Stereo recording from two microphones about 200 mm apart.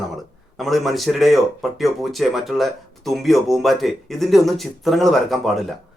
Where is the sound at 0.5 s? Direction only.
Centre (ahead or behind).